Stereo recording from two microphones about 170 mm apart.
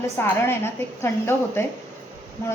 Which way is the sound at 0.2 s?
15° left (ahead or behind).